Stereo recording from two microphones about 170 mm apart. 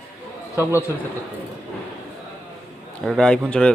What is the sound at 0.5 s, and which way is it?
Speech, 10° right (ahead or behind).